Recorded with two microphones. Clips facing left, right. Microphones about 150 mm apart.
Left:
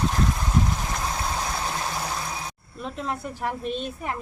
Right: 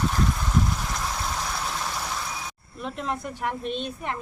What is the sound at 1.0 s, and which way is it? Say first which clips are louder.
Vehicle: left 2 dB; 15° left (ahead or behind).